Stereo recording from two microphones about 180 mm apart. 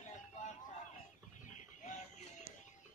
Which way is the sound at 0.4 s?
45° left (ahead or behind).